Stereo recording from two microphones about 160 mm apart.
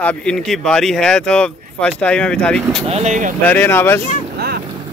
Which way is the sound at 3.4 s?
10° left (ahead or behind).